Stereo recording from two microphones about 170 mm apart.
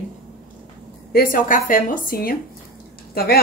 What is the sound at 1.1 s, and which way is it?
A woman's voice, 55° left (ahead or behind).